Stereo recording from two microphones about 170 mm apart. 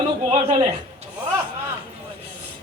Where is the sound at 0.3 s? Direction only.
40° right (ahead or behind).